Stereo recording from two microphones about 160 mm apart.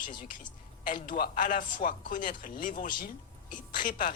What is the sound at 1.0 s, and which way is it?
Speech, 60° left (ahead or behind).